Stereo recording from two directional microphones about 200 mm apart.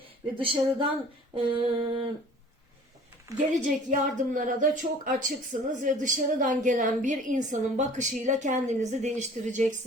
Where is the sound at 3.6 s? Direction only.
40° right (ahead or behind).